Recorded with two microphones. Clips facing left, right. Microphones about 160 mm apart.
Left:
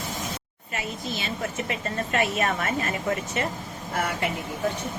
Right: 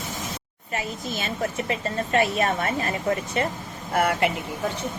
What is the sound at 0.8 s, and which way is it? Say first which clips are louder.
Speech: right 1 dB; 45° right (ahead or behind).